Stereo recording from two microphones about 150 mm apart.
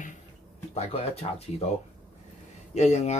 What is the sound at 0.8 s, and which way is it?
Cutlery, 45° left (ahead or behind).